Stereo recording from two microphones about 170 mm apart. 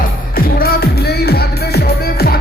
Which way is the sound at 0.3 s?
60° left (ahead or behind).